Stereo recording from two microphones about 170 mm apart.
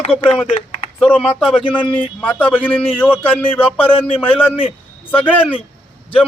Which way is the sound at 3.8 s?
35° left (ahead or behind).